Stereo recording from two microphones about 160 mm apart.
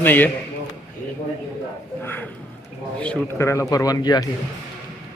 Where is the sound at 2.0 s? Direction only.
10° left (ahead or behind).